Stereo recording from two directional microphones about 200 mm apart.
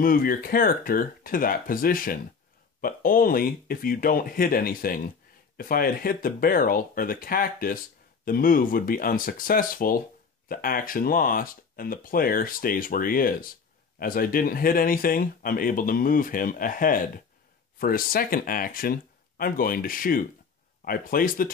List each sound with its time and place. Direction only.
0.0 s speech: 45° left (ahead or behind)